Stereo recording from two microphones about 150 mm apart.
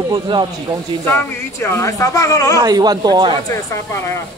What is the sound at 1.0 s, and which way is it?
Speech, 15° left (ahead or behind).